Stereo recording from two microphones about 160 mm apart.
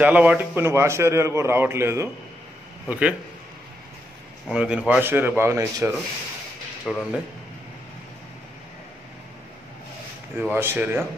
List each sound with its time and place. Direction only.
0.0 s a man's voice: 10° right (ahead or behind)
2.9 s a man's voice: 5° right (ahead or behind)
4.5 s a man's voice: 5° right (ahead or behind)
6.9 s speech: centre (ahead or behind)
10.5 s a man's voice: 15° right (ahead or behind)